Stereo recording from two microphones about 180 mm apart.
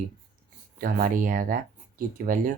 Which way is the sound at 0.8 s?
50° right (ahead or behind).